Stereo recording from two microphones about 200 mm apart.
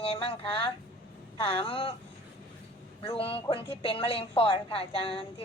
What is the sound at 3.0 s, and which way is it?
A woman's voice, 25° left (ahead or behind).